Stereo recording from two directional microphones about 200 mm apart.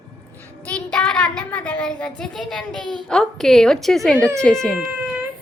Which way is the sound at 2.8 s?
20° right (ahead or behind).